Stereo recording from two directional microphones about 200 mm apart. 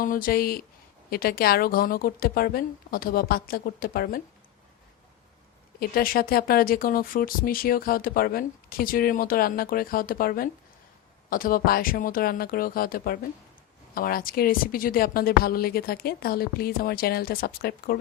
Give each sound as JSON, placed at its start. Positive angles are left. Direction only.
{"t": 0.0, "sound": "speech", "side_deg": 45}
{"t": 5.8, "sound": "speech", "side_deg": 50}